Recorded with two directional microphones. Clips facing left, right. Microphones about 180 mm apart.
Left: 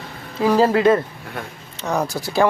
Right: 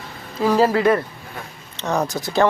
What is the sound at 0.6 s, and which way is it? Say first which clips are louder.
Speech: left 2 dB; 20° left (ahead or behind).